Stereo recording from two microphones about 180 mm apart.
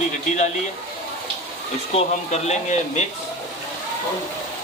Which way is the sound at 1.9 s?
35° left (ahead or behind).